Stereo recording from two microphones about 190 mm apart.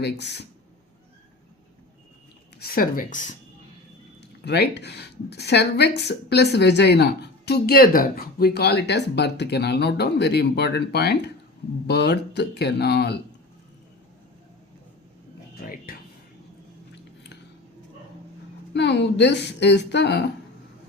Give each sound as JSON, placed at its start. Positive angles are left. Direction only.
{"t": 0.0, "sound": "speech", "side_deg": 60}
{"t": 2.6, "sound": "speech", "side_deg": 50}
{"t": 4.4, "sound": "speech", "side_deg": 60}
{"t": 15.9, "sound": "a sound", "side_deg": 50}
{"t": 18.7, "sound": "speech", "side_deg": 65}